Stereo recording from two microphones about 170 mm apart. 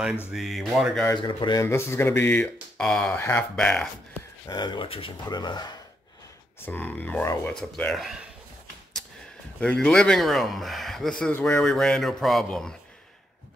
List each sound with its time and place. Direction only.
0.3 s speech: centre (ahead or behind)
1.0 s speech: 25° left (ahead or behind); by 3.9 s 5° left (ahead or behind)
4.5 s speech: 25° left (ahead or behind)
6.6 s speech: 10° left (ahead or behind)
9.6 s speech: 5° left (ahead or behind)